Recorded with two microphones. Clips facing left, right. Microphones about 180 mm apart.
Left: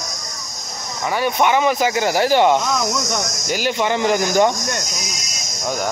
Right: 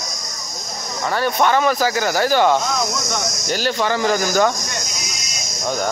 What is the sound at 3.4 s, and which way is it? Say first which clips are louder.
A man's voice: even; 15° left (ahead or behind).